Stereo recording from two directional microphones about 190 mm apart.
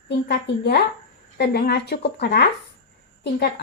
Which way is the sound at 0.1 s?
60° left (ahead or behind).